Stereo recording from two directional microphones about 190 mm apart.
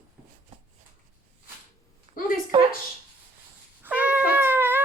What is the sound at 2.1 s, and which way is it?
Speech, 45° left (ahead or behind).